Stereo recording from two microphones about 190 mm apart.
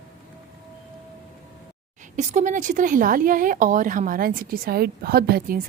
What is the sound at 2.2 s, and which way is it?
Speech, 35° right (ahead or behind).